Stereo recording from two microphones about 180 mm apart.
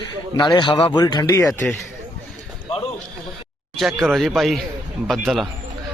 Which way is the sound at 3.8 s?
Centre (ahead or behind).